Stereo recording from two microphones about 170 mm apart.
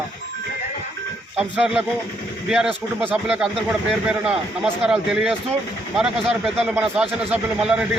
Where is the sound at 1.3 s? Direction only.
5° right (ahead or behind).